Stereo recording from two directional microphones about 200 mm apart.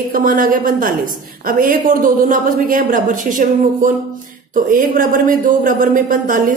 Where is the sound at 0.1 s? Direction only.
45° right (ahead or behind).